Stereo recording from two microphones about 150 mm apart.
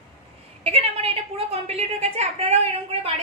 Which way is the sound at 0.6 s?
40° right (ahead or behind).